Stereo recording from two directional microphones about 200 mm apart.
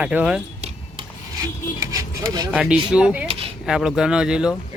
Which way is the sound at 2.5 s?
5° right (ahead or behind).